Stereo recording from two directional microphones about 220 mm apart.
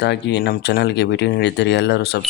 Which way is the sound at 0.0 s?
50° left (ahead or behind).